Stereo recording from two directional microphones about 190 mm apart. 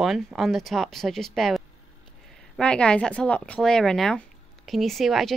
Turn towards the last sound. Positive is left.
turn(degrees=0)  # may be behind; listen again after turning